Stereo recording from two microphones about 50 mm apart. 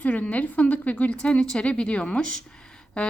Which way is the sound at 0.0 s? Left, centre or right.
Left.